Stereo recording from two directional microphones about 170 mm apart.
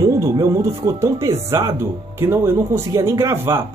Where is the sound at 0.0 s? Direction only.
20° right (ahead or behind).